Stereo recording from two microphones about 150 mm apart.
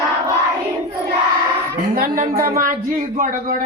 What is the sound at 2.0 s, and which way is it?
Speech, 65° right (ahead or behind).